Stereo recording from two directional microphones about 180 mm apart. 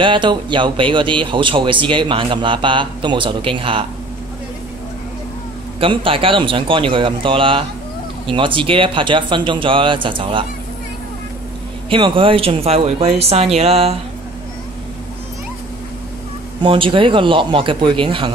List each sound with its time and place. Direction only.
0.0 s speech: 25° right (ahead or behind)
5.8 s speech: 30° right (ahead or behind)
11.9 s speech: 30° right (ahead or behind)
16.6 s speech: 30° right (ahead or behind)